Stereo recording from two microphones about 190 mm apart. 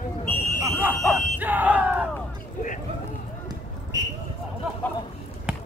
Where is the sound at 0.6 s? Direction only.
10° right (ahead or behind).